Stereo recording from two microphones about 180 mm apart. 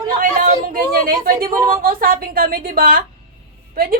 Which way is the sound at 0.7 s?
50° right (ahead or behind).